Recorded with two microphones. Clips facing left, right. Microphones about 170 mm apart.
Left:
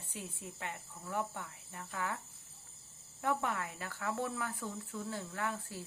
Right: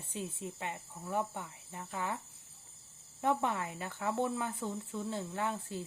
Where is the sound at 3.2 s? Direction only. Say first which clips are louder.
Right 3 dB; 20° right (ahead or behind).